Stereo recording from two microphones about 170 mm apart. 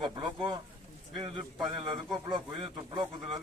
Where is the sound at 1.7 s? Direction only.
30° right (ahead or behind).